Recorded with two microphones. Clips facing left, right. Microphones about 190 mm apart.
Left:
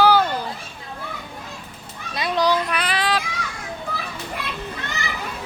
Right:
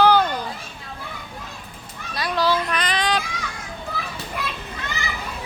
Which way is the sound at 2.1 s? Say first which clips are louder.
Left 1 dB; 20° left (ahead or behind).